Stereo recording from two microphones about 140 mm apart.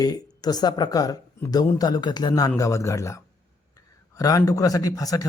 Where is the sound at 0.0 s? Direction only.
25° left (ahead or behind).